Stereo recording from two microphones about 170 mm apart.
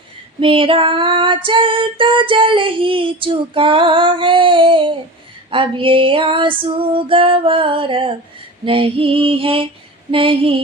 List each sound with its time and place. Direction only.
0.3 s female singing: 30° right (ahead or behind)